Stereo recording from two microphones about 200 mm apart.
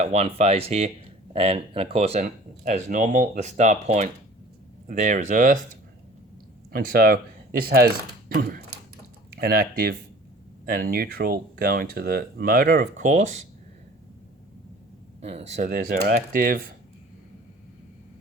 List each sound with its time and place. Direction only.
0.0 s speech: 30° right (ahead or behind)
6.7 s speech: 45° right (ahead or behind)
8.3 s speech: 45° right (ahead or behind)
15.2 s speech: 30° right (ahead or behind)